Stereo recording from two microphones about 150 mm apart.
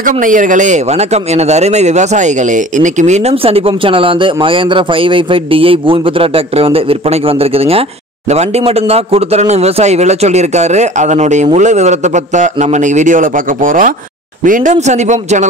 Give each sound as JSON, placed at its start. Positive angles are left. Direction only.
{"t": 0.0, "sound": "a man's voice", "side_deg": -60}